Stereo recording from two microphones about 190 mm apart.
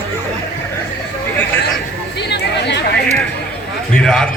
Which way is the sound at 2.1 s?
60° left (ahead or behind).